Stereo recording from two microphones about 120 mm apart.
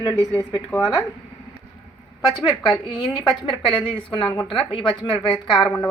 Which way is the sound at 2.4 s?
35° left (ahead or behind).